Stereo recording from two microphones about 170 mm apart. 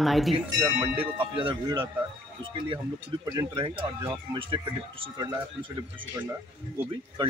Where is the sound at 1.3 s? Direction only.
30° right (ahead or behind).